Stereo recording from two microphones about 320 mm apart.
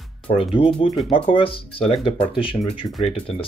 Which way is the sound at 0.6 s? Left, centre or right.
Centre.